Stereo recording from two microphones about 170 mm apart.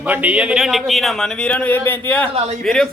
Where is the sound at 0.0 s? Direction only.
10° right (ahead or behind).